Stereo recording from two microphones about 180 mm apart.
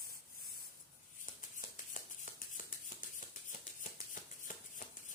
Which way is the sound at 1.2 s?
45° left (ahead or behind).